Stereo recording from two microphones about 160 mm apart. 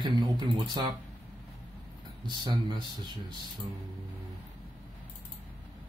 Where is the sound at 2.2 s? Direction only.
25° right (ahead or behind).